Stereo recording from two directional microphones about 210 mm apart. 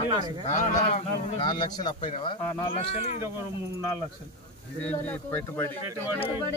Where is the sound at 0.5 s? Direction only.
35° left (ahead or behind).